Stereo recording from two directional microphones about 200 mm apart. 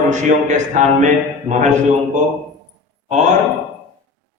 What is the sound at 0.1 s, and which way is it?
Speech, 35° right (ahead or behind).